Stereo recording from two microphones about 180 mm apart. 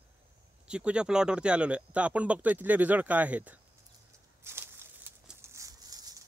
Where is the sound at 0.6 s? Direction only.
5° right (ahead or behind).